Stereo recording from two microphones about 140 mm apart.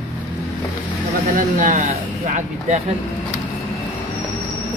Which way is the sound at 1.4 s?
70° right (ahead or behind).